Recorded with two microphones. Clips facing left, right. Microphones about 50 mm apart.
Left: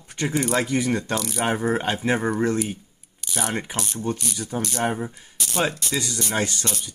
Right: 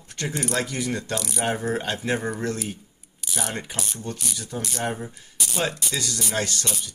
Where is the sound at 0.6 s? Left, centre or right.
Left.